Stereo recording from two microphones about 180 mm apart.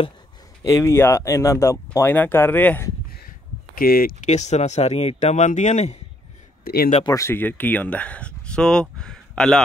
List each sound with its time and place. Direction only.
0.7 s speech: 15° left (ahead or behind)
3.7 s speech: 55° left (ahead or behind)
4.3 s speech: 40° left (ahead or behind)
6.6 s speech: 55° left (ahead or behind)
7.1 s speech: 15° left (ahead or behind)